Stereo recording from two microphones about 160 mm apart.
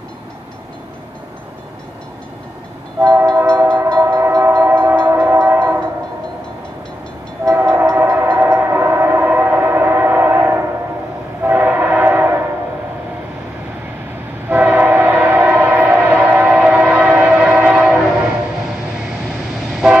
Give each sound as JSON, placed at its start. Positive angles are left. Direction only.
{"t": 3.0, "sound": "train", "side_deg": -20}
{"t": 7.4, "sound": "train", "side_deg": -15}
{"t": 14.5, "sound": "train", "side_deg": -10}